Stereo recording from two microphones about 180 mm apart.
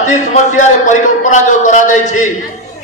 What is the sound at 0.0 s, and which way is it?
A man's voice, 40° left (ahead or behind).